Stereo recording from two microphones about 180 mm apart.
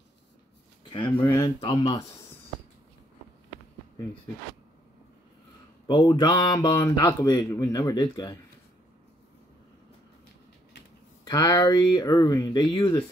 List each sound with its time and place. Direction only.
1.0 s speech: 10° left (ahead or behind)
1.6 s speech: 25° left (ahead or behind)
5.9 s speech: 25° left (ahead or behind)
11.2 s speech: 20° left (ahead or behind)